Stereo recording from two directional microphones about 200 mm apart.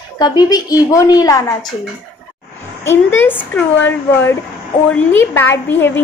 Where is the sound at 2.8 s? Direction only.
10° left (ahead or behind).